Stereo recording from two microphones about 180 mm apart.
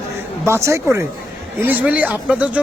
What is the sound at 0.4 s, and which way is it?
A man's voice, 15° right (ahead or behind).